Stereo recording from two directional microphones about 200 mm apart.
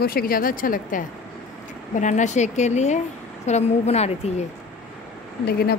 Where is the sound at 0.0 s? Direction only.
50° left (ahead or behind); by 4.5 s 30° left (ahead or behind).